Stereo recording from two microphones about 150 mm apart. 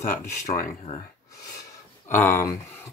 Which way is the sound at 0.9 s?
35° left (ahead or behind).